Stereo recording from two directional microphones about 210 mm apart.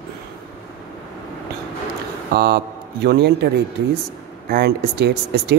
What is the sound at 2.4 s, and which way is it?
A man's voice, 50° right (ahead or behind).